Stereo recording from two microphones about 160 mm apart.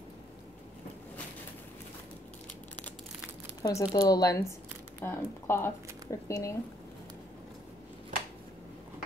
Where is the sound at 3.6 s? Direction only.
20° left (ahead or behind).